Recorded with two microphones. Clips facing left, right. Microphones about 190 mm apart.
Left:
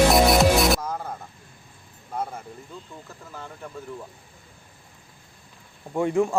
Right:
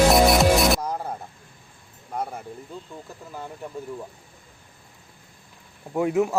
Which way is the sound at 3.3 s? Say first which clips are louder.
Right 3 dB; 15° right (ahead or behind).